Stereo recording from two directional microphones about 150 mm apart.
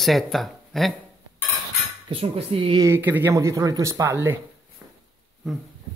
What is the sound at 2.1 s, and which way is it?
Cutlery, 40° right (ahead or behind).